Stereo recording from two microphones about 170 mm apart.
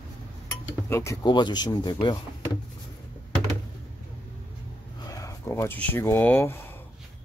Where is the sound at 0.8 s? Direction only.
15° left (ahead or behind).